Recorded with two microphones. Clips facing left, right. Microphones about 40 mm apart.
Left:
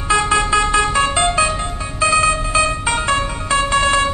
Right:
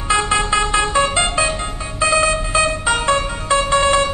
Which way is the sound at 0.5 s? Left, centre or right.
Centre.